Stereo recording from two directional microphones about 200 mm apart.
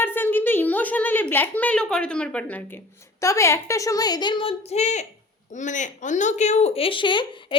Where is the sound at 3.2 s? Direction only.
15° left (ahead or behind).